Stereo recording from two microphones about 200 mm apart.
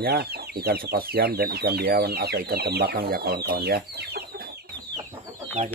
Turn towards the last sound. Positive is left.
turn(degrees=-35)  # may be behind; listen again after turning